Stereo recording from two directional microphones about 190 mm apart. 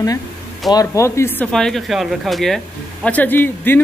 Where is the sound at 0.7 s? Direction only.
20° left (ahead or behind).